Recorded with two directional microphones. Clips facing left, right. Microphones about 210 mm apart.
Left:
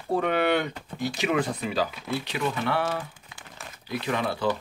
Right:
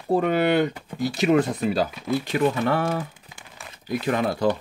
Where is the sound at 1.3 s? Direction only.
40° right (ahead or behind).